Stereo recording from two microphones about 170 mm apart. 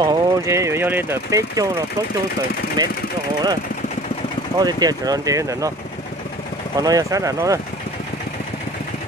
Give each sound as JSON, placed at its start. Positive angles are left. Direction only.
{"t": 0.0, "sound": "speech", "side_deg": -20}
{"t": 2.8, "sound": "speech", "side_deg": -25}
{"t": 4.6, "sound": "speech", "side_deg": -25}
{"t": 6.8, "sound": "speech", "side_deg": -20}